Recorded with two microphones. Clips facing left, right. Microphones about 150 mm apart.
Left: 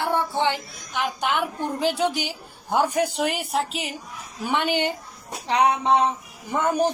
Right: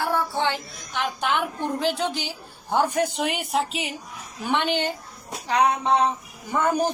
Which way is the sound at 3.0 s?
Centre (ahead or behind).